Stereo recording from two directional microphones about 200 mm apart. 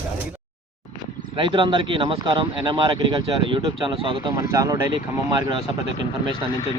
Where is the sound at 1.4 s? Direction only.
25° right (ahead or behind).